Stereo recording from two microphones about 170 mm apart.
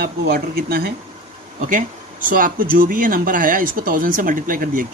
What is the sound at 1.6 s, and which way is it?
Speech, 50° right (ahead or behind).